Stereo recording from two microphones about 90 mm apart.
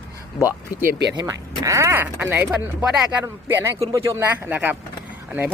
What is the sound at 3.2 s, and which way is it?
Speech, 25° right (ahead or behind).